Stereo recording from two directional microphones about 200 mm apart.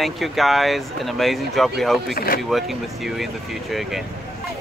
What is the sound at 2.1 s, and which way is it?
Speech, 50° left (ahead or behind).